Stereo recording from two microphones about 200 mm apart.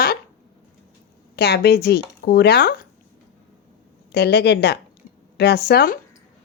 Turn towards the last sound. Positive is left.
turn(degrees=50)  # may be behind; listen again after turning